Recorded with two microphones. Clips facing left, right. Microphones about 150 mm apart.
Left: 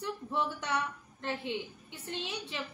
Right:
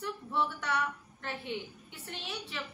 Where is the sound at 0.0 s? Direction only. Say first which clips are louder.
Even; 20° left (ahead or behind).